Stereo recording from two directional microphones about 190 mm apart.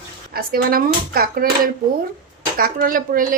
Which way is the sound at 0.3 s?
50° right (ahead or behind).